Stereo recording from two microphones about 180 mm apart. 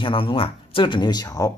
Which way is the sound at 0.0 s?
30° left (ahead or behind).